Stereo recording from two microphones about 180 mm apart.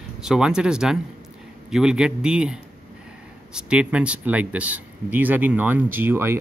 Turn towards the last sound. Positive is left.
turn(degrees=-10)  # may be behind; listen again after turning